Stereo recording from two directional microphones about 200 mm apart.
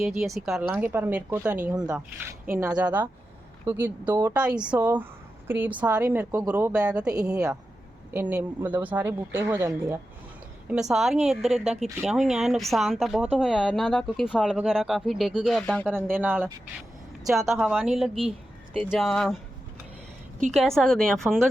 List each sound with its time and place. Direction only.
0.2 s speech: centre (ahead or behind)
7.1 s speech: 20° right (ahead or behind)
10.7 s speech: centre (ahead or behind)
16.1 s speech: 10° right (ahead or behind)
20.5 s speech: centre (ahead or behind)